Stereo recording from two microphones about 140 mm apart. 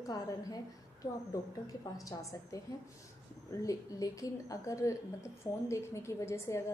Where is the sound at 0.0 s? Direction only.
25° left (ahead or behind).